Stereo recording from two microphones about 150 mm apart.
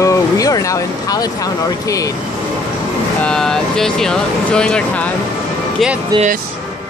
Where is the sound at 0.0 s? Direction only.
20° left (ahead or behind).